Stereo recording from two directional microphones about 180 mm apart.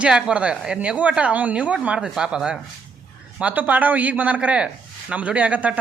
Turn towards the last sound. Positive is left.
turn(degrees=-10)  # may be behind; listen again after turning